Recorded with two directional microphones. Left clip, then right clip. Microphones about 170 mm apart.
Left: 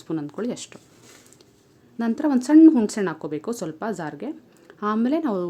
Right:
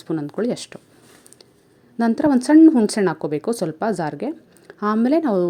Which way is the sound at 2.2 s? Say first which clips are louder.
Right 2 dB; 25° right (ahead or behind).